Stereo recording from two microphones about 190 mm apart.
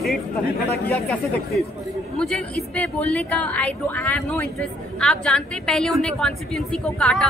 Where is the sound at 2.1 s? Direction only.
Centre (ahead or behind).